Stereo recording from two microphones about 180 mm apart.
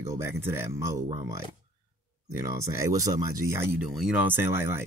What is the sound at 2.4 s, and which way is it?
Speech, 20° right (ahead or behind).